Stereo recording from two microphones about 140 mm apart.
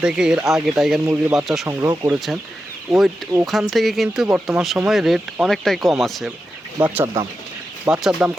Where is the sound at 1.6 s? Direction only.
20° right (ahead or behind).